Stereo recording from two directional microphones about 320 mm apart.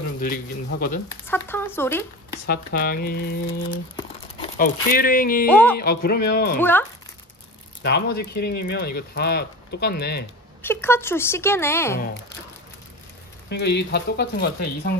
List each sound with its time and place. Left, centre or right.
0.2 s speech: left
1.0 s speech: centre
2.3 s speech: left
3.7 s crumpling: centre
4.6 s speech: left
5.5 s speech: centre
5.8 s speech: left
6.6 s speech: centre
7.8 s speech: left
10.6 s speech: centre
13.5 s speech: left